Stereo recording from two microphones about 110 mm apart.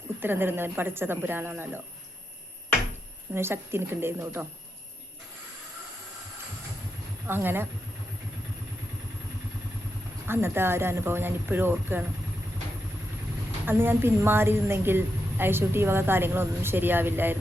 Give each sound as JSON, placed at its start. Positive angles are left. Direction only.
{"t": 0.2, "sound": "a woman's voice", "side_deg": -20}
{"t": 3.3, "sound": "a woman's voice", "side_deg": -20}
{"t": 7.3, "sound": "a woman's voice", "side_deg": -20}
{"t": 10.2, "sound": "a woman's voice", "side_deg": -20}
{"t": 13.7, "sound": "a woman's voice", "side_deg": -20}